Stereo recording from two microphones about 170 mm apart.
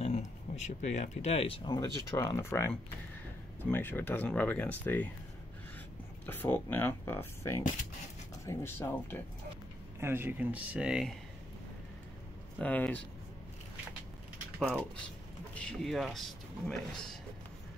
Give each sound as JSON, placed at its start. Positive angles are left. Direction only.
{"t": 0.0, "sound": "a sound", "side_deg": 40}
{"t": 0.7, "sound": "speech", "side_deg": 45}
{"t": 3.7, "sound": "speech", "side_deg": 10}
{"t": 6.2, "sound": "speech", "side_deg": 10}
{"t": 9.9, "sound": "speech", "side_deg": -15}
{"t": 12.5, "sound": "speech", "side_deg": 10}
{"t": 14.6, "sound": "a man's voice", "side_deg": 5}